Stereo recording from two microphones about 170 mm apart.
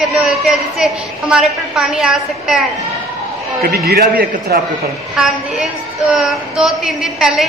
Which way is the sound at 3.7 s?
65° right (ahead or behind).